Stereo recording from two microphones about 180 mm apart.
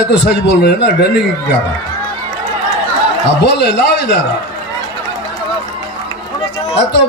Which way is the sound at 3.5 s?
70° left (ahead or behind).